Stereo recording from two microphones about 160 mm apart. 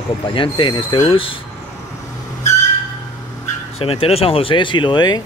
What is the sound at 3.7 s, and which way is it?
Speech, 35° left (ahead or behind).